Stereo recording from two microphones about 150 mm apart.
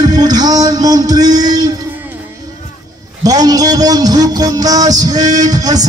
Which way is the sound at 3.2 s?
25° right (ahead or behind).